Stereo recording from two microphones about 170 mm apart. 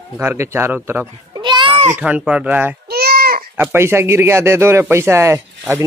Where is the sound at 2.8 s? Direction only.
65° right (ahead or behind).